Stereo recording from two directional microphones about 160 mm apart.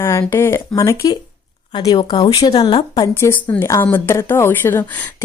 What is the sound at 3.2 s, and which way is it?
A woman's voice, 15° left (ahead or behind).